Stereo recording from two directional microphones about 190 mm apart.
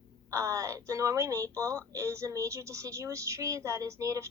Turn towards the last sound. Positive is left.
turn(degrees=-15)  # may be behind; listen again after turning